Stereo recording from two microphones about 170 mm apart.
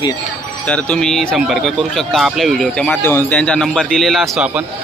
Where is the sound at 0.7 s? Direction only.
5° left (ahead or behind).